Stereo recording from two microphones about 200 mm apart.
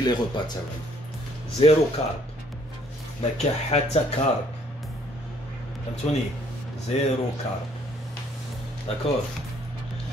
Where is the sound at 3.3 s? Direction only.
35° left (ahead or behind).